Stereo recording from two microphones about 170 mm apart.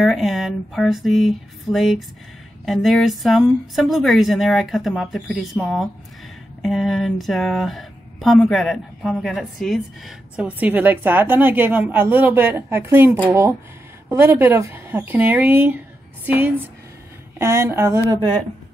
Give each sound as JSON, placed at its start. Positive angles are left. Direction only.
{"t": 0.0, "sound": "speech", "side_deg": 0}